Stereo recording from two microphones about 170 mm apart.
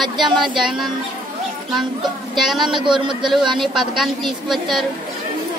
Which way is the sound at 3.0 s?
30° right (ahead or behind).